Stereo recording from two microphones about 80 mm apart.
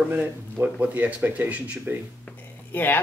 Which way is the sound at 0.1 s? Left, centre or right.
Centre.